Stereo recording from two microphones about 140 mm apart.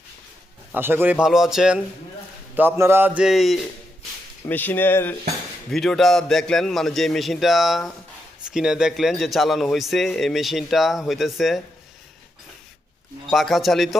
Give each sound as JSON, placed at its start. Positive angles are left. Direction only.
{"t": 0.7, "sound": "a man's voice", "side_deg": -15}
{"t": 2.6, "sound": "a man's voice", "side_deg": -15}
{"t": 3.2, "sound": "a man's voice", "side_deg": 0}
{"t": 4.4, "sound": "speech", "side_deg": 15}
{"t": 5.7, "sound": "a man's voice", "side_deg": 0}
{"t": 13.3, "sound": "a man's voice", "side_deg": 0}